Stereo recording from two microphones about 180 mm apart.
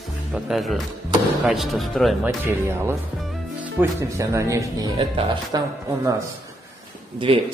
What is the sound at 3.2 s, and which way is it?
Music, centre (ahead or behind).